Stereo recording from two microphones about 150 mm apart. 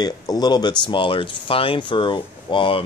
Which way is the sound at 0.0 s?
25° left (ahead or behind).